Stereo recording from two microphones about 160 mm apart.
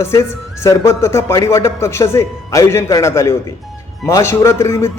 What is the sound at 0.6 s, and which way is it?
A man's voice, 15° left (ahead or behind).